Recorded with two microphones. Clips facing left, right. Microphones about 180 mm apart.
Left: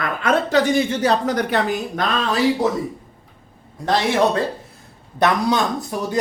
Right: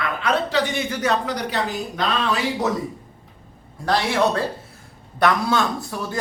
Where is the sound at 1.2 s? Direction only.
50° left (ahead or behind).